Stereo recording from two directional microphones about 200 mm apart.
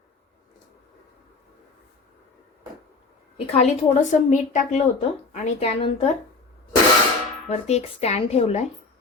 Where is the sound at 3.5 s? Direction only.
35° left (ahead or behind).